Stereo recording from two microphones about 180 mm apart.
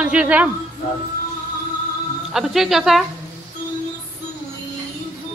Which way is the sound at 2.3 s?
Centre (ahead or behind).